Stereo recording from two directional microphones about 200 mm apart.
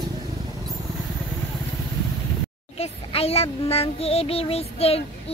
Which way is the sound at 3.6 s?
30° left (ahead or behind).